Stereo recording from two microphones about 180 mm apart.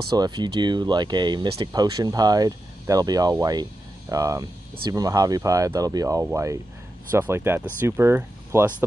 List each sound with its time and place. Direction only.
0.1 s speech: 25° right (ahead or behind)